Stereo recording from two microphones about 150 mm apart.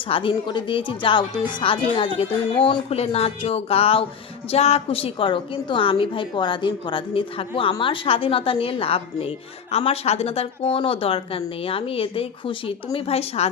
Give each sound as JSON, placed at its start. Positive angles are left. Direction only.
{"t": 0.1, "sound": "a woman's voice", "side_deg": 35}